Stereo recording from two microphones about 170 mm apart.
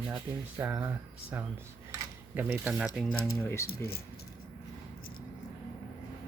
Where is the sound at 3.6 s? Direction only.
65° left (ahead or behind).